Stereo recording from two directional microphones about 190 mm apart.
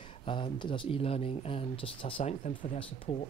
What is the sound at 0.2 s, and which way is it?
Speech, 25° left (ahead or behind).